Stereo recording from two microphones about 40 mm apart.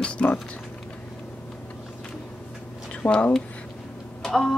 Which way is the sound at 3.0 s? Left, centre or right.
Left.